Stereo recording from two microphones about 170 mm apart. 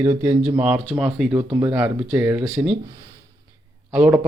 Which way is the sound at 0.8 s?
Centre (ahead or behind).